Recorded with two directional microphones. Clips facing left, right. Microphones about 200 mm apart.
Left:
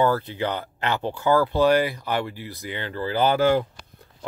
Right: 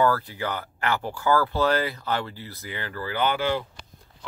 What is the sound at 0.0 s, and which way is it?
Speech, 25° left (ahead or behind).